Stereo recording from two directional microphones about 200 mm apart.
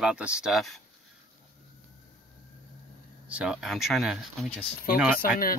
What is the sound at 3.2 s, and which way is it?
Speech, 5° right (ahead or behind).